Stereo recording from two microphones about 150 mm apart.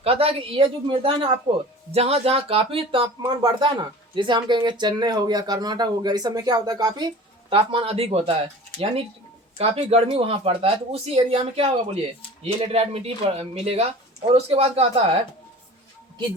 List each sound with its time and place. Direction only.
0.0 s speech: 40° right (ahead or behind)
9.6 s speech: 40° right (ahead or behind)